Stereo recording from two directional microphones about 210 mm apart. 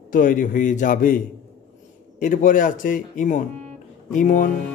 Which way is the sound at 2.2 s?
40° left (ahead or behind).